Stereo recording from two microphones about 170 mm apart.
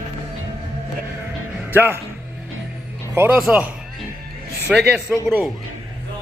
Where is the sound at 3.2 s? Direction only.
10° right (ahead or behind).